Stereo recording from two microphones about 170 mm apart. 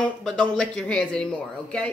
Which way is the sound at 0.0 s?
5° left (ahead or behind).